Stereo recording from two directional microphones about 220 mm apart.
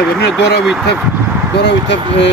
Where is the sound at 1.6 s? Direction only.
50° left (ahead or behind).